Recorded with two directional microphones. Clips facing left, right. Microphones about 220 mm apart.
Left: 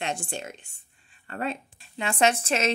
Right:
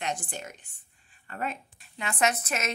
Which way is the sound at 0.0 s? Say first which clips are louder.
Left 2 dB; 25° left (ahead or behind).